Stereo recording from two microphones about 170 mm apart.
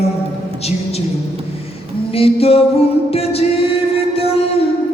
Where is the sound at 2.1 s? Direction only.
35° left (ahead or behind).